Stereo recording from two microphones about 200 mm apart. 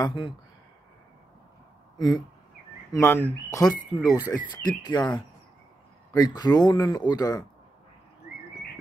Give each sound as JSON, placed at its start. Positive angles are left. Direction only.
{"t": 0.0, "sound": "speech", "side_deg": 25}
{"t": 2.0, "sound": "speech", "side_deg": 20}
{"t": 6.1, "sound": "speech", "side_deg": 20}